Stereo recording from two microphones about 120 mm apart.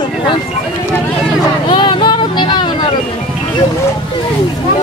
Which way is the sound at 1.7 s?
40° left (ahead or behind).